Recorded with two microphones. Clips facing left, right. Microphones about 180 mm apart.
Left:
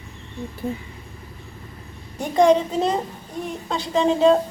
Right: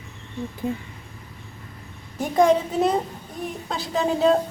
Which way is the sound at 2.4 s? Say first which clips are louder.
Left 2 dB; 5° right (ahead or behind).